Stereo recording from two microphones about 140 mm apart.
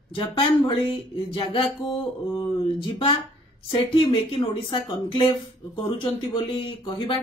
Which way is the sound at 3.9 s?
40° left (ahead or behind).